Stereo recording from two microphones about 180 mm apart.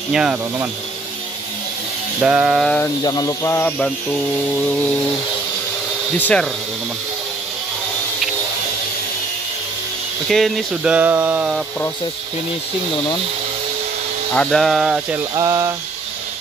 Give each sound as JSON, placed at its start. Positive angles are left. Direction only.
{"t": 0.1, "sound": "speech", "side_deg": -5}
{"t": 2.2, "sound": "a sound", "side_deg": -5}
{"t": 3.0, "sound": "speech", "side_deg": 20}
{"t": 6.1, "sound": "speech", "side_deg": 10}
{"t": 10.2, "sound": "speech", "side_deg": 0}
{"t": 14.3, "sound": "speech", "side_deg": 5}
{"t": 15.3, "sound": "a sound", "side_deg": -15}